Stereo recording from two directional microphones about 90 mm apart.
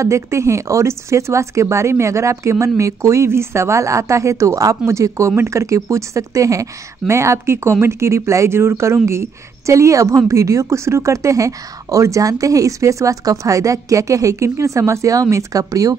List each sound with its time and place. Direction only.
0.0 s speech: 30° right (ahead or behind)